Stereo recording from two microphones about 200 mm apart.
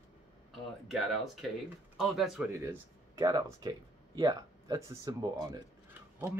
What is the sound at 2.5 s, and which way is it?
Speech, 15° right (ahead or behind).